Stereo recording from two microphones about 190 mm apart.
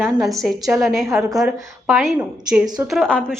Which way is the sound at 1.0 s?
15° right (ahead or behind).